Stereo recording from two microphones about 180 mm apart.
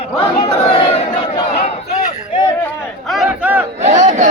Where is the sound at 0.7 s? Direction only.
30° left (ahead or behind).